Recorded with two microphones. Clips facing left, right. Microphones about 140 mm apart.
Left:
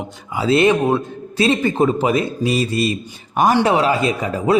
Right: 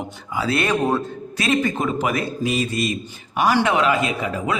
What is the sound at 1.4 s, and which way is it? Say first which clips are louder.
A man's voice: left 5 dB; 30° left (ahead or behind).